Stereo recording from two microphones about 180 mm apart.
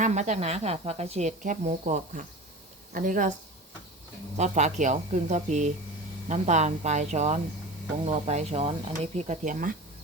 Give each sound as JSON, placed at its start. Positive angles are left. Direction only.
{"t": 0.0, "sound": "speech", "side_deg": -40}
{"t": 4.4, "sound": "speech", "side_deg": -40}